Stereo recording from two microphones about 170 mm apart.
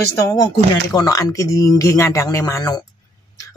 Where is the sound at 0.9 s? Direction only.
20° left (ahead or behind).